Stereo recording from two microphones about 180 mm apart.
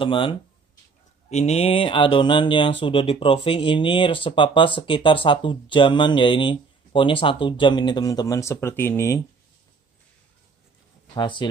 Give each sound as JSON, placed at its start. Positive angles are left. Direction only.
{"t": 0.0, "sound": "speech", "side_deg": 30}
{"t": 11.1, "sound": "speech", "side_deg": 25}